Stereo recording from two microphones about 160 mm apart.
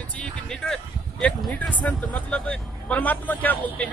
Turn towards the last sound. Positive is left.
turn(degrees=10)  # may be behind; listen again after turning